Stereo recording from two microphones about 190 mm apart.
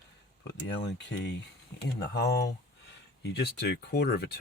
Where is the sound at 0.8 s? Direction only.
65° left (ahead or behind).